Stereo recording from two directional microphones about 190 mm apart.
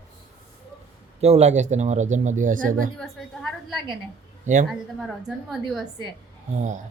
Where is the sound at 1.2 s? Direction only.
35° right (ahead or behind).